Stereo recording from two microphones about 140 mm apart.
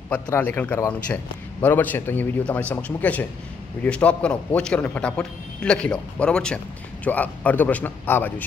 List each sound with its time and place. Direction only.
0.1 s a man's voice: 10° left (ahead or behind)